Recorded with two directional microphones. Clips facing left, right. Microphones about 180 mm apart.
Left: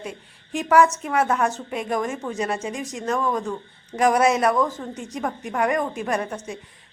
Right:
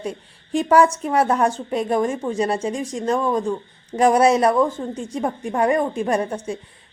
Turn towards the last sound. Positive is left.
turn(degrees=-30)  # may be behind; listen again after turning